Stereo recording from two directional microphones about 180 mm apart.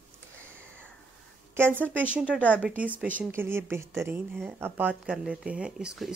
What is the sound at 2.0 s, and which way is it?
Speech, 10° right (ahead or behind).